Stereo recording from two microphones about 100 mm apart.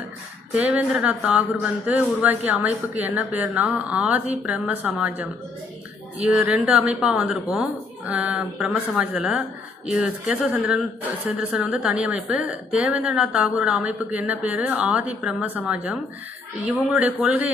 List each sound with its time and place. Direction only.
0.5 s a woman's voice: 15° right (ahead or behind)